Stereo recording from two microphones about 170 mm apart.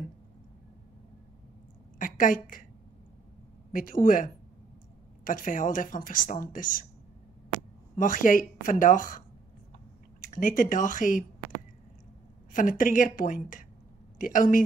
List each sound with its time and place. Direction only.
2.0 s a woman's voice: 55° left (ahead or behind)
3.7 s a woman's voice: 55° left (ahead or behind)
8.0 s a woman's voice: 50° left (ahead or behind)
10.2 s a woman's voice: 50° left (ahead or behind)
12.5 s a woman's voice: 50° left (ahead or behind)